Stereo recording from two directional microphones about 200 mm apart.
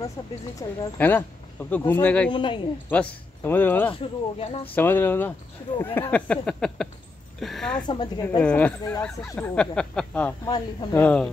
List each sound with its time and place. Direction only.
0.6 s speech: 10° left (ahead or behind)
2.3 s speech: 25° left (ahead or behind)
2.9 s speech: 10° left (ahead or behind)
3.9 s speech: 30° left (ahead or behind)
4.7 s speech: 10° left (ahead or behind)
5.9 s a sound: 10° left (ahead or behind)
7.8 s speech: 20° left (ahead or behind)
8.4 s speech: 5° left (ahead or behind)
10.4 s speech: 20° left (ahead or behind)
11.0 s speech: 5° left (ahead or behind)